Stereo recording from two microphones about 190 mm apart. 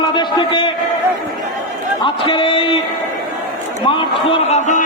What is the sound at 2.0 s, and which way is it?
Speech, 25° left (ahead or behind).